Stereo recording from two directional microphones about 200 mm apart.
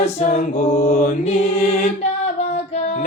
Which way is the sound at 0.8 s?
45° left (ahead or behind).